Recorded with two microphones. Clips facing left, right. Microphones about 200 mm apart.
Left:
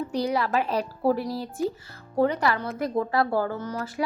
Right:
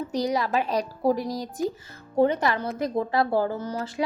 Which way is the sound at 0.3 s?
15° right (ahead or behind).